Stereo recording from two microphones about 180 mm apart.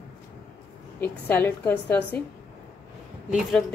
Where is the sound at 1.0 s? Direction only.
10° left (ahead or behind).